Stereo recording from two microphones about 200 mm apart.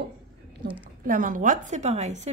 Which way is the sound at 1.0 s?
40° right (ahead or behind).